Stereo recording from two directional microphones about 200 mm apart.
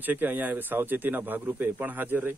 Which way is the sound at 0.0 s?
10° right (ahead or behind).